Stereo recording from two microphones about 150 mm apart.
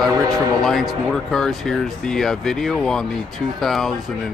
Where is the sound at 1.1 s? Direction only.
Centre (ahead or behind).